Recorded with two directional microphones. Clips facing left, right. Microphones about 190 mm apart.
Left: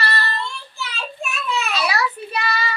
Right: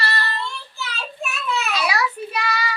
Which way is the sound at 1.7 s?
10° right (ahead or behind).